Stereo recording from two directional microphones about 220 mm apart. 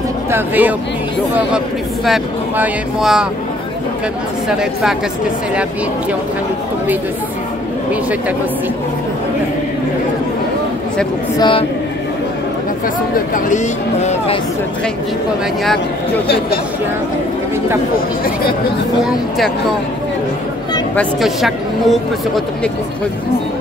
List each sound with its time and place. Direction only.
0.3 s speech: 10° right (ahead or behind)
2.0 s speech: 5° right (ahead or behind)
11.3 s speech: 20° left (ahead or behind)
13.1 s speech: 40° left (ahead or behind)
14.0 s speech: 25° left (ahead or behind)
20.9 s speech: centre (ahead or behind)